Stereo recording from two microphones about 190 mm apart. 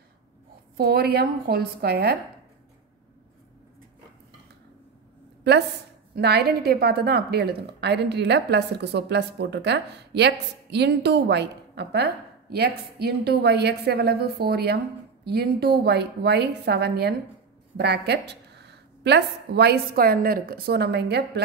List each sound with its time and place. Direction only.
0.7 s a woman's voice: 55° right (ahead or behind)
5.4 s a sound: 60° right (ahead or behind)
6.1 s a woman's voice: 55° right (ahead or behind)